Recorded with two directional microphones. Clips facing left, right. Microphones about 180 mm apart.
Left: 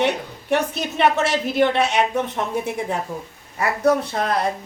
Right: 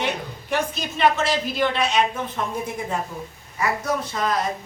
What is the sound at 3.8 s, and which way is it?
Speech, 60° left (ahead or behind).